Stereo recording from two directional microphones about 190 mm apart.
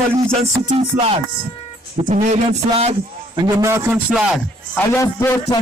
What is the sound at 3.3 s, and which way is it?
Speech, 20° right (ahead or behind).